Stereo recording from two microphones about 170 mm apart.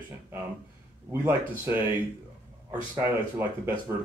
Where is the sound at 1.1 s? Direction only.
10° right (ahead or behind).